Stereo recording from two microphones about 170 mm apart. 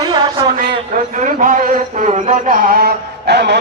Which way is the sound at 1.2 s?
50° right (ahead or behind).